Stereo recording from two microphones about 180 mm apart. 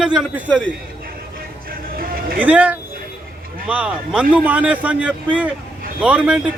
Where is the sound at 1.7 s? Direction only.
55° right (ahead or behind).